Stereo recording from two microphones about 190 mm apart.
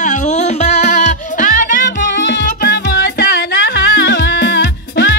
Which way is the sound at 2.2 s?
60° left (ahead or behind).